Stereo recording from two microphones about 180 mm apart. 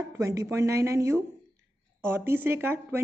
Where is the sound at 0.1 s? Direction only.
15° right (ahead or behind).